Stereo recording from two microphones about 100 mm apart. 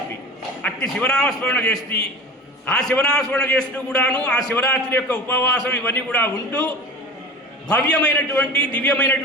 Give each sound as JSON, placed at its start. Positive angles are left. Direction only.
{"t": 0.6, "sound": "a man's voice", "side_deg": 10}
{"t": 7.7, "sound": "a man's voice", "side_deg": 10}